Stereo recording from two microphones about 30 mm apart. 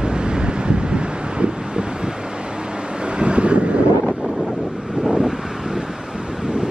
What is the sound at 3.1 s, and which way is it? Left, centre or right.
Vehicle, right.